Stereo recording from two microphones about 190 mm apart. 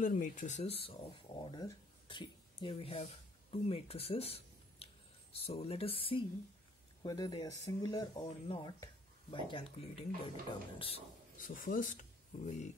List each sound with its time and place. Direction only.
0.0 s speech: 45° left (ahead or behind)
11.3 s speech: 45° left (ahead or behind)